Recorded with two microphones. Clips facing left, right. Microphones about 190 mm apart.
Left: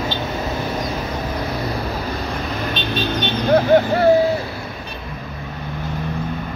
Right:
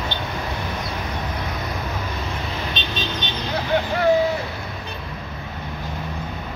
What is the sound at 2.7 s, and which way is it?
Vehicle, 55° left (ahead or behind).